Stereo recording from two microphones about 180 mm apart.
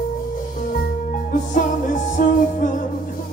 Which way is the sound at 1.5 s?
45° left (ahead or behind).